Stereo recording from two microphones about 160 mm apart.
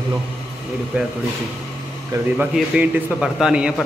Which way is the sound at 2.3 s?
10° right (ahead or behind).